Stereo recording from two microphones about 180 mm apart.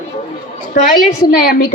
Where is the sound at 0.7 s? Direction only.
50° left (ahead or behind).